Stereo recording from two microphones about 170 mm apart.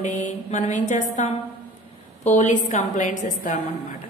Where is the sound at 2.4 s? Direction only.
45° left (ahead or behind).